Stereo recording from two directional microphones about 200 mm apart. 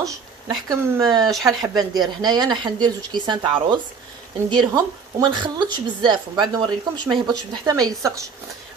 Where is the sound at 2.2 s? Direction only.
20° right (ahead or behind).